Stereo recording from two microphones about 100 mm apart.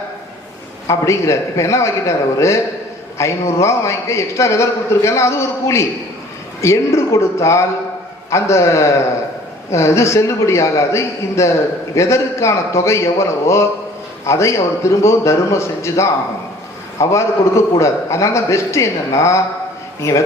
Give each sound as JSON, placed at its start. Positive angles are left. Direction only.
{"t": 0.9, "sound": "a man's voice", "side_deg": 30}